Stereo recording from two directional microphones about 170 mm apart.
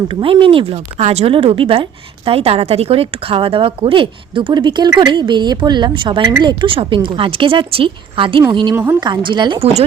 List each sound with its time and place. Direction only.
0.1 s a woman's voice: 30° right (ahead or behind)
8.7 s a woman's voice: 15° right (ahead or behind)
9.0 s speech: 25° right (ahead or behind)